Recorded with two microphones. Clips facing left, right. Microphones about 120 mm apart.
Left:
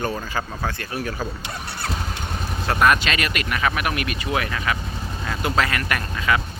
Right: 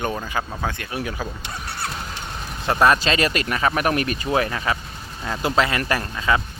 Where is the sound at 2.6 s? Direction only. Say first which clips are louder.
Right 2 dB; 25° right (ahead or behind).